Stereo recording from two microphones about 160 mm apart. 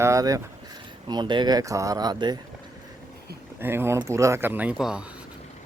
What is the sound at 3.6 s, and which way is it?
Speech, 15° right (ahead or behind).